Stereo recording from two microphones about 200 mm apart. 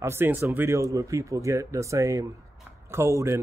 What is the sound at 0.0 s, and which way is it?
Speech, 10° right (ahead or behind).